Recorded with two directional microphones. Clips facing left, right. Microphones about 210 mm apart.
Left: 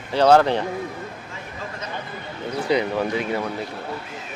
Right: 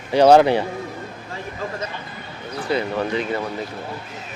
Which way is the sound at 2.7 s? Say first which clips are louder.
Even; 15° left (ahead or behind).